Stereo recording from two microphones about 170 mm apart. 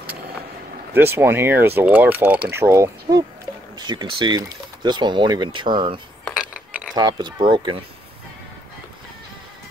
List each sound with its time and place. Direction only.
0.9 s speech: 15° right (ahead or behind)
6.2 s a sound: 5° right (ahead or behind)
6.9 s speech: 25° right (ahead or behind)